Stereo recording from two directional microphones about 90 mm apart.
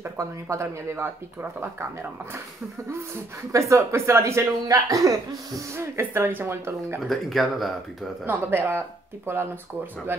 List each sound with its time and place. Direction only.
0.0 s speech: 35° right (ahead or behind)
3.5 s speech: 30° right (ahead or behind)
5.8 s speech: 30° right (ahead or behind)
7.1 s speech: centre (ahead or behind)
8.3 s speech: 20° right (ahead or behind)